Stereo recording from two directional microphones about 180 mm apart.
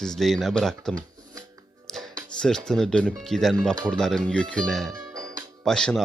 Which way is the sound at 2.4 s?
5° left (ahead or behind).